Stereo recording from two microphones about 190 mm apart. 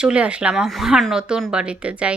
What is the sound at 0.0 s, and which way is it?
Speech, 5° right (ahead or behind).